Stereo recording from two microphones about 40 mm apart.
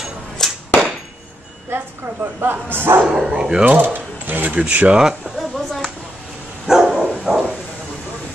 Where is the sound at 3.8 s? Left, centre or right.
Right.